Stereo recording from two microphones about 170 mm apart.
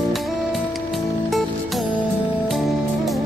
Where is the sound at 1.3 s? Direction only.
Centre (ahead or behind).